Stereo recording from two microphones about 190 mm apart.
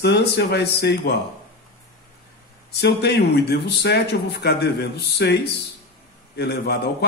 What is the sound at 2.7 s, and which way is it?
A man's voice, 60° left (ahead or behind).